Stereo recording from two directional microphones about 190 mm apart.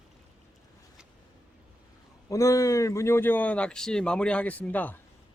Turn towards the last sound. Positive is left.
turn(degrees=10)  # may be behind; listen again after turning